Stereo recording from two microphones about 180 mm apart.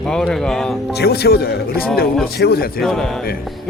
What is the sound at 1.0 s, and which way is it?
A man's voice, 65° left (ahead or behind).